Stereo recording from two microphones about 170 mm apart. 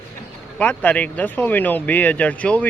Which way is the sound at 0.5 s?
10° left (ahead or behind).